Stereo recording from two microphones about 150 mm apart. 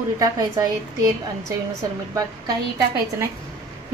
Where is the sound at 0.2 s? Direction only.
25° right (ahead or behind).